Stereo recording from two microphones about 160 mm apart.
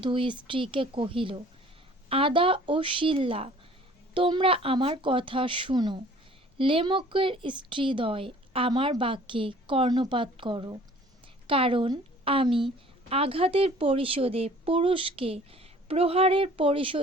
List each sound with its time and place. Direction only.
0.0 s a woman's voice: 30° right (ahead or behind)